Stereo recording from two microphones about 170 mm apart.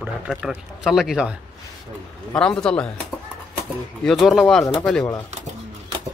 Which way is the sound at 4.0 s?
Centre (ahead or behind).